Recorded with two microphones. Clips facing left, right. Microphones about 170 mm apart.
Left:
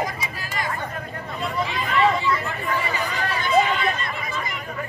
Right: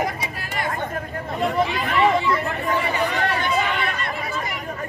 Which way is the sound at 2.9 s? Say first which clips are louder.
Right 4 dB; 70° right (ahead or behind).